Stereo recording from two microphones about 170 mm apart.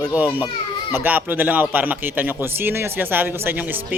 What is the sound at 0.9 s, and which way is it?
Speech, 10° right (ahead or behind).